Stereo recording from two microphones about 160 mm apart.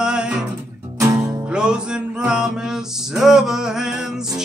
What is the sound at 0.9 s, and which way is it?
Music, 20° right (ahead or behind).